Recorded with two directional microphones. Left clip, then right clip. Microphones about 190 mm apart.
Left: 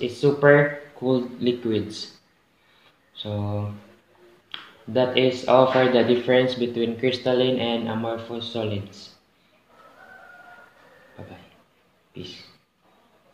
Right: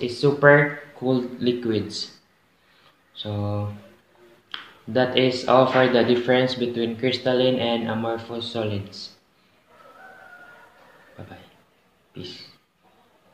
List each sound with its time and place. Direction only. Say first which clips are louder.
0.0 s speech: right 1 dB; 10° right (ahead or behind)
3.2 s speech: right 1 dB; 10° right (ahead or behind)
12.1 s speech: right 1 dB; 5° right (ahead or behind)